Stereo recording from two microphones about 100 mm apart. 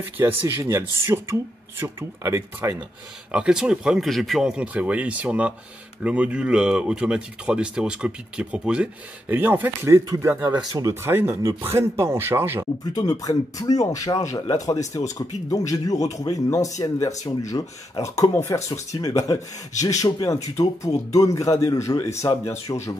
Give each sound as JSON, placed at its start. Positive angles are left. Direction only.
{"t": 0.0, "sound": "speech", "side_deg": -20}
{"t": 3.3, "sound": "speech", "side_deg": -10}
{"t": 10.3, "sound": "speech", "side_deg": -10}
{"t": 10.7, "sound": "speech", "side_deg": -35}
{"t": 11.0, "sound": "speech", "side_deg": -25}
{"t": 12.9, "sound": "speech", "side_deg": 35}